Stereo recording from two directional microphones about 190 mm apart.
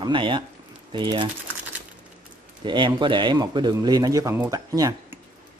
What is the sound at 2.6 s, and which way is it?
A man's voice, 25° right (ahead or behind).